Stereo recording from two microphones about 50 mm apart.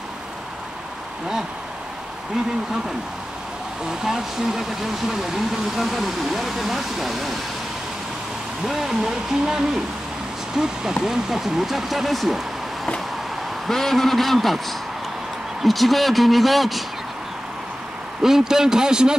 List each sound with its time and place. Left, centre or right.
4.0 s speech: centre
5.8 s speech: centre
8.6 s speech: centre
10.6 s speech: centre
13.7 s speech: centre
18.2 s speech: centre